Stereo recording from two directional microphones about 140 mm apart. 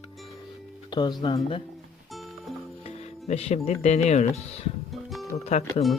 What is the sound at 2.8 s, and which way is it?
Speech, 45° left (ahead or behind).